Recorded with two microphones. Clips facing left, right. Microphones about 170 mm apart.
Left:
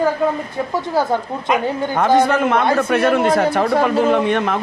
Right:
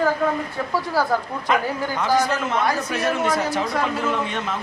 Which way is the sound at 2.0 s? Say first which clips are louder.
Left 7 dB; 55° left (ahead or behind).